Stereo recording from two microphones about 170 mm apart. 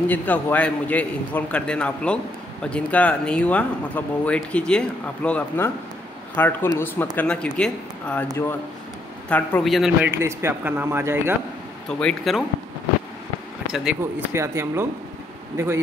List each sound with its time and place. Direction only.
0.1 s speech: 10° left (ahead or behind)
10.1 s speech: 15° right (ahead or behind)
12.0 s speech: 5° left (ahead or behind)
13.7 s speech: 5° right (ahead or behind)
14.3 s speech: 15° right (ahead or behind)